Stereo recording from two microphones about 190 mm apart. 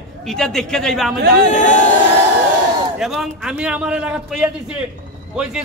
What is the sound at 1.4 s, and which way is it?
Speech, 40° left (ahead or behind).